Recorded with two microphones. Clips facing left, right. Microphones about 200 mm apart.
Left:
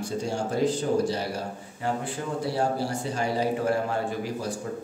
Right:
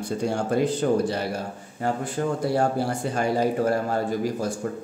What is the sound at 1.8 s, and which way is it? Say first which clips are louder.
A man's voice: right 4 dB; 50° right (ahead or behind).